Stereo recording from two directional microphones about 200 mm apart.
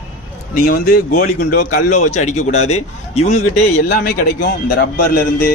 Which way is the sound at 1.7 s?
35° left (ahead or behind).